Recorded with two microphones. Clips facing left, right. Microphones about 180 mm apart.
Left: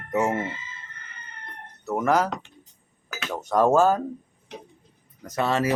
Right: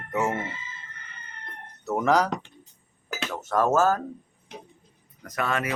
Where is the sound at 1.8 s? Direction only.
Centre (ahead or behind).